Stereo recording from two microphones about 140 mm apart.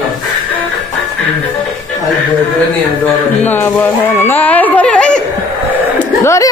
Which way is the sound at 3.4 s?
15° left (ahead or behind).